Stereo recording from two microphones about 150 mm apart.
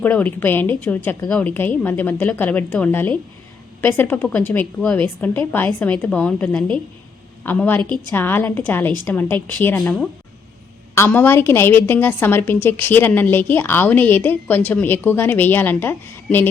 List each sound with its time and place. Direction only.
0.0 s a woman's voice: 10° left (ahead or behind)
10.9 s a woman's voice: 15° left (ahead or behind)